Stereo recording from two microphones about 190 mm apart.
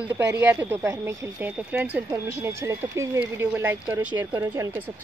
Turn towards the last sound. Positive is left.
turn(degrees=-10)  # may be behind; listen again after turning